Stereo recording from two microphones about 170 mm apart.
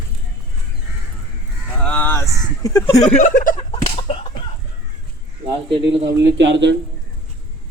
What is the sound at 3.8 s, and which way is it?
Chicken, 35° left (ahead or behind).